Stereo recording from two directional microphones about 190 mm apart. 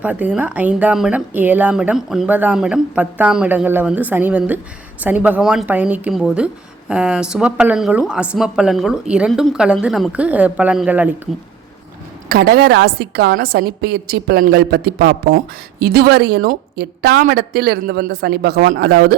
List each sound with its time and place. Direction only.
0.0 s speech: 10° right (ahead or behind)
12.3 s a woman's voice: 55° right (ahead or behind)